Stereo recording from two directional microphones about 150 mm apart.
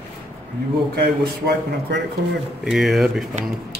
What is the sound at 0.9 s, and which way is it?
A man's voice, 90° right.